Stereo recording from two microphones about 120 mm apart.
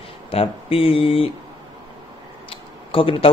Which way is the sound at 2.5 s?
50° left (ahead or behind).